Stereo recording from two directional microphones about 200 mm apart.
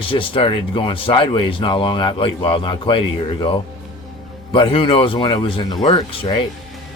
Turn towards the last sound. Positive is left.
turn(degrees=25)  # may be behind; listen again after turning